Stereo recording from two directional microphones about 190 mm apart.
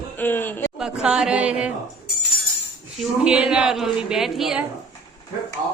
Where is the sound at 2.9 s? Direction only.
5° right (ahead or behind).